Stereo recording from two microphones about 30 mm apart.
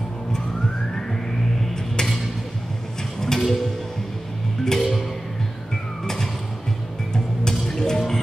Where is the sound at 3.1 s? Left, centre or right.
Centre.